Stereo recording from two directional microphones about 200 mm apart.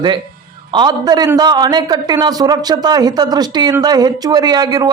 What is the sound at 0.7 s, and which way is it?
A man's voice, 20° right (ahead or behind).